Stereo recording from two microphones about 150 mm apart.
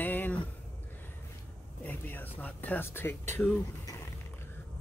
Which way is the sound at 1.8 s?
10° left (ahead or behind).